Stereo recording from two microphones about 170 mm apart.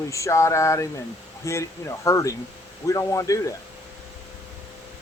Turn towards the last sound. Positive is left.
turn(degrees=20)  # may be behind; listen again after turning